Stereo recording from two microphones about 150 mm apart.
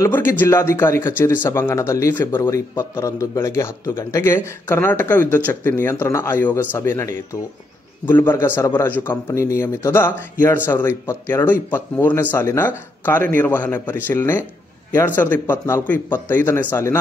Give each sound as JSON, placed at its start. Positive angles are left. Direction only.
{"t": 0.0, "sound": "speech", "side_deg": 15}